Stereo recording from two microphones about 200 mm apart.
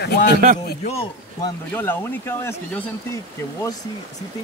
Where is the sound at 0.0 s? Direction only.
55° left (ahead or behind).